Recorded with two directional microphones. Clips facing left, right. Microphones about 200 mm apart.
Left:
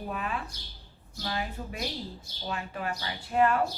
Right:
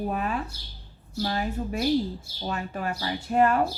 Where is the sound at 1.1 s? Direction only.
40° right (ahead or behind).